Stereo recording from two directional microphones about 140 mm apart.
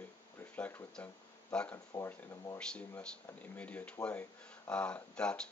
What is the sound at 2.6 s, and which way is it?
Speech, 10° left (ahead or behind).